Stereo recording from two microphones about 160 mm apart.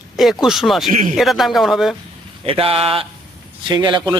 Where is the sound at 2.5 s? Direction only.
35° right (ahead or behind).